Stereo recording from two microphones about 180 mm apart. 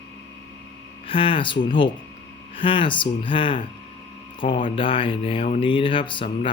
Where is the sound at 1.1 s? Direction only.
30° left (ahead or behind).